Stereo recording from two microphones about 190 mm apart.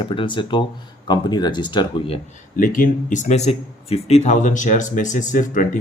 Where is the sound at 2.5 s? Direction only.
45° left (ahead or behind).